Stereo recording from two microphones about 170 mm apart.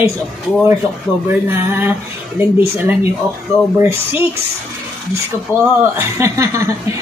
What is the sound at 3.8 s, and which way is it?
Speech, 15° right (ahead or behind).